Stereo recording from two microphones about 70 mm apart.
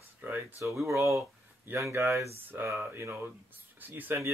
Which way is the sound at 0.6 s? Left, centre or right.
Right.